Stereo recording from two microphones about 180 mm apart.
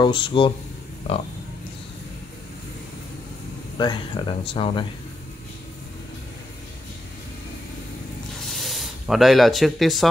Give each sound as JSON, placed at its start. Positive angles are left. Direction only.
{"t": 0.0, "sound": "speech", "side_deg": 30}
{"t": 3.7, "sound": "speech", "side_deg": 25}
{"t": 8.5, "sound": "spray", "side_deg": 0}